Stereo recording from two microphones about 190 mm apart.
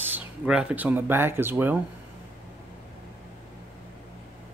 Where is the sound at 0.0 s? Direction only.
5° right (ahead or behind).